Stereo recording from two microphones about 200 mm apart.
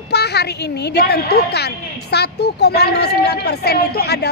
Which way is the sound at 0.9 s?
55° left (ahead or behind).